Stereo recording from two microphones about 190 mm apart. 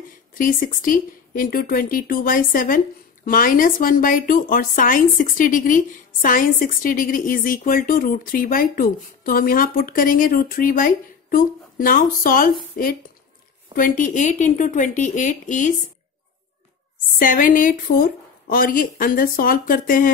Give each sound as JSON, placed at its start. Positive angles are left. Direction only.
{"t": 0.3, "sound": "speech", "side_deg": 45}
{"t": 13.7, "sound": "speech", "side_deg": 45}
{"t": 17.2, "sound": "speech", "side_deg": 45}